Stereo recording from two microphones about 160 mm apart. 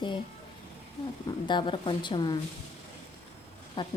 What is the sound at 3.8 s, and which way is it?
Speech, 30° left (ahead or behind).